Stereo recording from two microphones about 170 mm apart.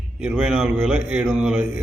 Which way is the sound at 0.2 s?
5° right (ahead or behind).